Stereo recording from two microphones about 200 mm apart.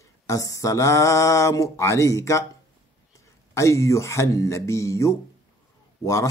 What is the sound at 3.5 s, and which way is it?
Mantra, 15° left (ahead or behind).